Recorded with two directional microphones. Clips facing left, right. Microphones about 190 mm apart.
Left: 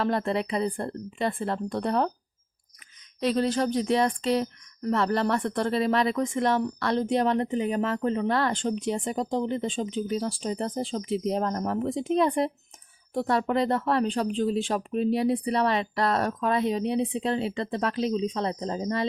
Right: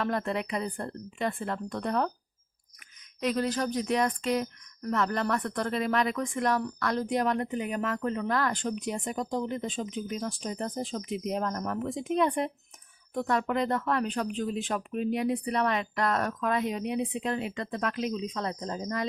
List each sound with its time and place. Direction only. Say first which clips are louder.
0.0 s speech: left 4 dB; 30° left (ahead or behind)
3.2 s speech: left 4 dB; 30° left (ahead or behind)